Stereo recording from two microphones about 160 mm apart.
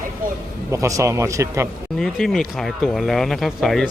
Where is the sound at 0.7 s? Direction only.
20° right (ahead or behind).